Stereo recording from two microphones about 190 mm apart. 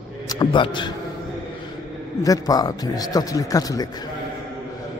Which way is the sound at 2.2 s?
20° left (ahead or behind).